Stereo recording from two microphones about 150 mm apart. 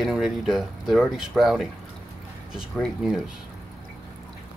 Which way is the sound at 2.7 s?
Centre (ahead or behind).